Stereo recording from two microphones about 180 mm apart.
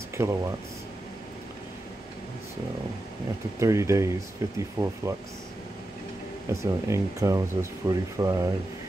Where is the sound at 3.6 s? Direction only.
15° right (ahead or behind).